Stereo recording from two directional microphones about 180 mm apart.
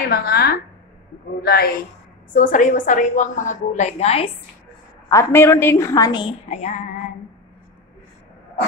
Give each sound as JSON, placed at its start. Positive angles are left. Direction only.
{"t": 0.1, "sound": "a woman's voice", "side_deg": 55}
{"t": 2.3, "sound": "a woman's voice", "side_deg": 45}
{"t": 5.1, "sound": "a woman's voice", "side_deg": 15}
{"t": 6.5, "sound": "female singing", "side_deg": 40}